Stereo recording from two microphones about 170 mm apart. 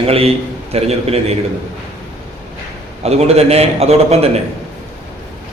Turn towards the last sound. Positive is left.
turn(degrees=-35)  # may be behind; listen again after turning